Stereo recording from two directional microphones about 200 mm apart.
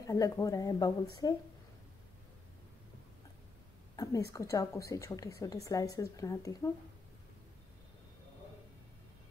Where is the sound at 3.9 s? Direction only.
15° left (ahead or behind).